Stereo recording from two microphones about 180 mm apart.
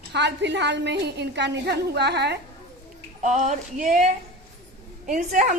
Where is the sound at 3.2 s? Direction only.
40° right (ahead or behind).